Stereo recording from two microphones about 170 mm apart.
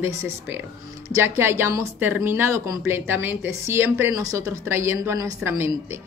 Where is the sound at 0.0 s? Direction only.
15° right (ahead or behind).